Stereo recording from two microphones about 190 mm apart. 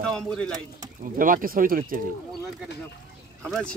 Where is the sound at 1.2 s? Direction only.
45° right (ahead or behind).